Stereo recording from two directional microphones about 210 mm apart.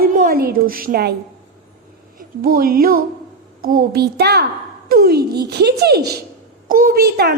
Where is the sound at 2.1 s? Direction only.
45° right (ahead or behind).